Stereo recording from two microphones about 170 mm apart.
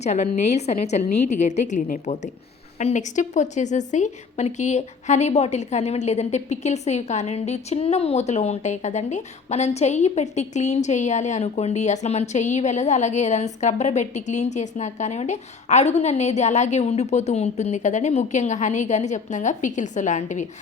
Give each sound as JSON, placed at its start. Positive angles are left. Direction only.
{"t": 0.0, "sound": "a woman's voice", "side_deg": 40}